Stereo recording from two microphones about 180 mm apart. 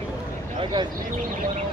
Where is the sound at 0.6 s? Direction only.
25° right (ahead or behind).